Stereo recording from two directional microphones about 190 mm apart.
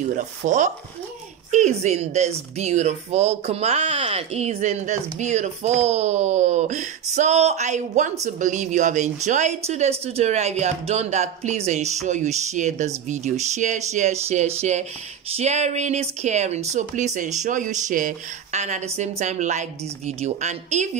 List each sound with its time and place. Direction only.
0.1 s speech: 40° right (ahead or behind)